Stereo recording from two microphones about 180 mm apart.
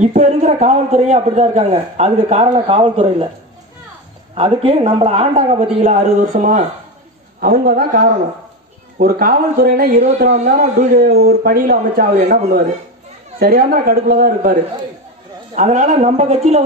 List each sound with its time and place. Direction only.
0.0 s a man's voice: 45° right (ahead or behind)
4.4 s a man's voice: 30° right (ahead or behind); by 10.0 s 55° right (ahead or behind)
10.0 s a man's voice: 40° right (ahead or behind)
13.4 s speech: 55° right (ahead or behind)
15.5 s a man's voice: 40° right (ahead or behind)